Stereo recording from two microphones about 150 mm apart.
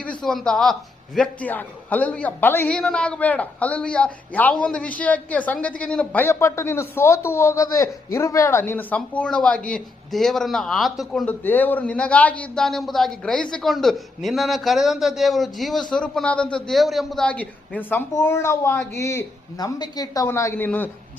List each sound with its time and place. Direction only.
0.3 s a man's voice: 5° left (ahead or behind)
11.4 s a man's voice: 10° left (ahead or behind)